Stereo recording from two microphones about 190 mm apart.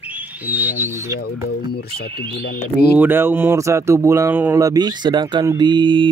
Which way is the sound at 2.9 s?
10° right (ahead or behind).